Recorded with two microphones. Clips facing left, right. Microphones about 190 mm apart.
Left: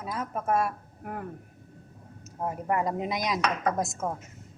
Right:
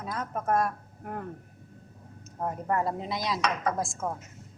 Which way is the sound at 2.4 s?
10° left (ahead or behind).